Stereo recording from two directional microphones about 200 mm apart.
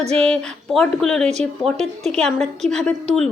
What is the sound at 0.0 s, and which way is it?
Speech, 30° right (ahead or behind).